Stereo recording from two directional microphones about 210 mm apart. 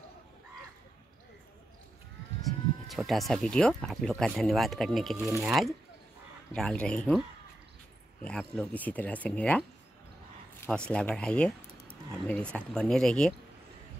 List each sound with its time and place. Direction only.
2.9 s speech: centre (ahead or behind)